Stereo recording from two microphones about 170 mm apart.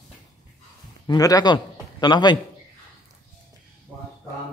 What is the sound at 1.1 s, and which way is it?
A man's voice, 20° left (ahead or behind).